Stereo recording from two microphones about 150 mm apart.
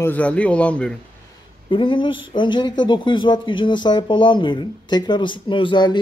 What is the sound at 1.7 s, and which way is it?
Speech, 35° left (ahead or behind).